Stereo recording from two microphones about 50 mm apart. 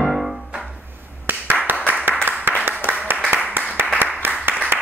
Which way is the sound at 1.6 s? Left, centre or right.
Right.